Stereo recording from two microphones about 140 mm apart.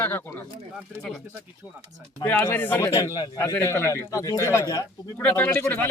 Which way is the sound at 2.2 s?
15° left (ahead or behind).